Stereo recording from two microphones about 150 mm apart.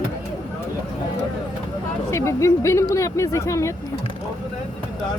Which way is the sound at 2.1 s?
20° left (ahead or behind).